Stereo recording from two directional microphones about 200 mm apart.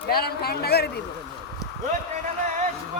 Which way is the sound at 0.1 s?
50° left (ahead or behind).